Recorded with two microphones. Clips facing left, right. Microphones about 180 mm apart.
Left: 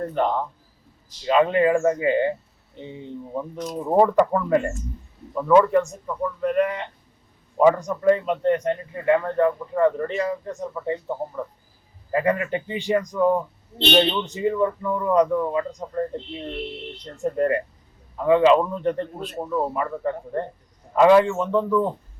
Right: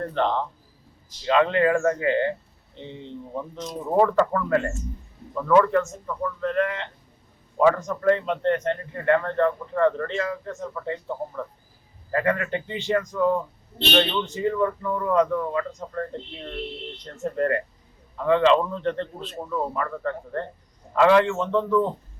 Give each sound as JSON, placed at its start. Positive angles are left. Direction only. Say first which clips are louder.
{"t": 0.0, "sound": "a man's voice", "louder": "left 1 dB", "side_deg": 10}